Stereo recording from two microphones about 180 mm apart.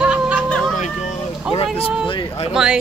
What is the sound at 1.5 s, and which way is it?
Speech, 5° right (ahead or behind).